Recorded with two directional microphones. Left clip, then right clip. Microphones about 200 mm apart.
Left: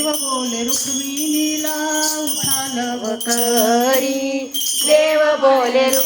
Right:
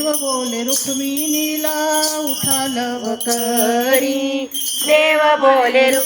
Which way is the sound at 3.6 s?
10° left (ahead or behind).